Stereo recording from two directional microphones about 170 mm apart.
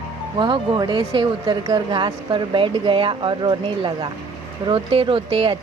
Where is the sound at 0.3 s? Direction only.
30° right (ahead or behind).